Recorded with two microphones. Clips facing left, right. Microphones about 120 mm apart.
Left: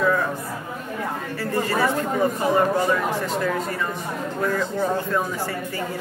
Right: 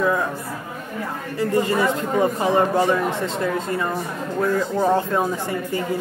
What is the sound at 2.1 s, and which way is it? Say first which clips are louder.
Speech: right 3 dB; 25° right (ahead or behind).